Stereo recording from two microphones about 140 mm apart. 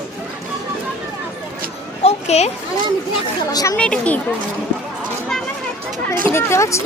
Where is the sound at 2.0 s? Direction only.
50° left (ahead or behind).